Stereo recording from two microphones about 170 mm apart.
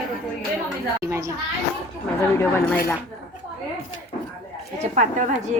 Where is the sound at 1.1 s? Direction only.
15° right (ahead or behind).